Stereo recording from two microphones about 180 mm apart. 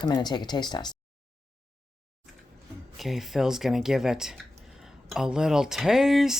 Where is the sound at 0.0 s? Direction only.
25° left (ahead or behind).